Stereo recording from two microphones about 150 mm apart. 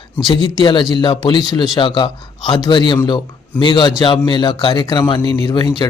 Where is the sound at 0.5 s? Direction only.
30° left (ahead or behind).